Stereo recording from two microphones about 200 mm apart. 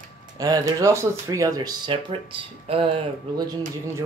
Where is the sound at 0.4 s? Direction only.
20° right (ahead or behind).